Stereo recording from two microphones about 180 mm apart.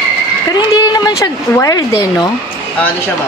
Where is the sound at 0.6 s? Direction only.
20° left (ahead or behind).